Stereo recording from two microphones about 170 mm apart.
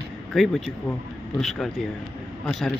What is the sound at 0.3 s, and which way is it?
A man's voice, centre (ahead or behind).